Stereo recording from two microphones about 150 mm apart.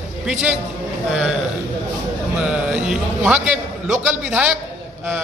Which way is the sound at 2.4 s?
5° right (ahead or behind).